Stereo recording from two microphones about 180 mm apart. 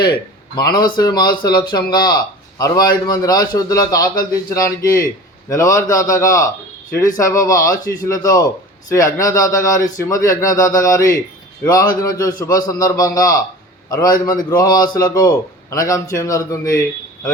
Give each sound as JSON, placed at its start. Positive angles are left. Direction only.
{"t": 0.0, "sound": "a man's voice", "side_deg": 25}
{"t": 4.1, "sound": "speech", "side_deg": 50}
{"t": 4.5, "sound": "a man's voice", "side_deg": 20}